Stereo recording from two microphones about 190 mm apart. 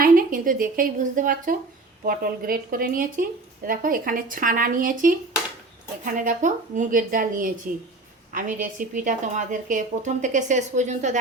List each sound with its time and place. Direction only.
0.0 s a woman's voice: 45° right (ahead or behind)